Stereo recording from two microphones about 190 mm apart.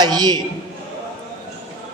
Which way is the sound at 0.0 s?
20° right (ahead or behind).